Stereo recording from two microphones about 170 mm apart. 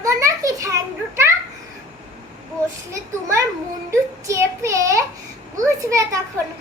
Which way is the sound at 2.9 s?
20° right (ahead or behind).